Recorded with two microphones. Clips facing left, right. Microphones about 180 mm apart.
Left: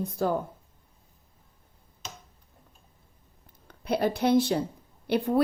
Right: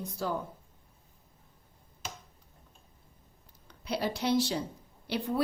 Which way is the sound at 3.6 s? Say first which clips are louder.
Left 6 dB; 55° left (ahead or behind).